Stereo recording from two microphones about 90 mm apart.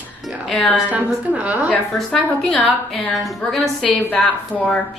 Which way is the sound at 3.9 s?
20° left (ahead or behind).